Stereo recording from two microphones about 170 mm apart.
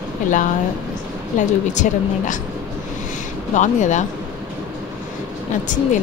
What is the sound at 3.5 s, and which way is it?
Speech, 45° left (ahead or behind).